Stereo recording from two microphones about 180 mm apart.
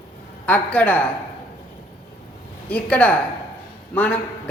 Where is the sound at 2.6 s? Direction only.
10° left (ahead or behind).